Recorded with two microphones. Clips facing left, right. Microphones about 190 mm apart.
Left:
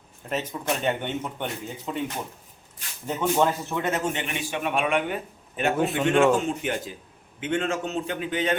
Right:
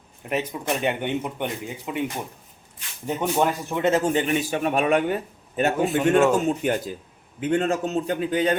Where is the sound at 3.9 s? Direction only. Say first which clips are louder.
Right 9 dB; 30° right (ahead or behind).